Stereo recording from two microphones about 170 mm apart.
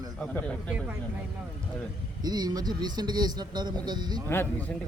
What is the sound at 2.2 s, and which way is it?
Speech, 25° right (ahead or behind).